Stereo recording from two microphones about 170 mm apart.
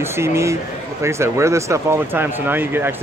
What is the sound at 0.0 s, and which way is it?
Speech, 15° right (ahead or behind).